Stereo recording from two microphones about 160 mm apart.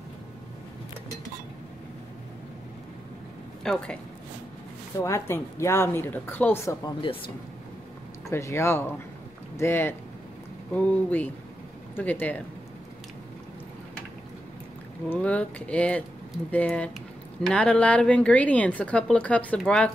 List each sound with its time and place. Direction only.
3.6 s speech: 5° left (ahead or behind)
5.0 s a woman's voice: 15° left (ahead or behind)
7.0 s speech: 30° left (ahead or behind)
8.3 s a woman's voice: 20° left (ahead or behind)
15.0 s a woman's voice: 10° left (ahead or behind)